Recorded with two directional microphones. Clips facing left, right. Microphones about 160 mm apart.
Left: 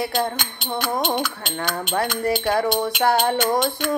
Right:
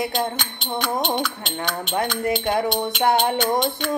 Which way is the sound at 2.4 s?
20° right (ahead or behind).